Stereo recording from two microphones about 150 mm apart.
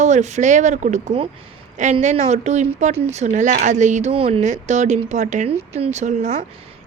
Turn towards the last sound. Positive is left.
turn(degrees=-55)  # may be behind; listen again after turning